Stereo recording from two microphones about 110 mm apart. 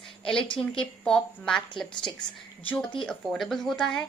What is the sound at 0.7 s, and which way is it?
A woman's voice, 5° left (ahead or behind).